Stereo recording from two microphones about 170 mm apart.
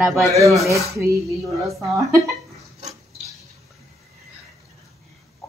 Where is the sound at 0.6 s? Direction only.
20° right (ahead or behind).